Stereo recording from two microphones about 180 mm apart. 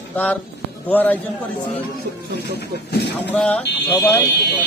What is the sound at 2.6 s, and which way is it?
Speech, 70° left (ahead or behind).